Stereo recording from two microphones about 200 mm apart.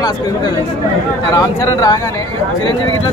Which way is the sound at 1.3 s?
20° left (ahead or behind).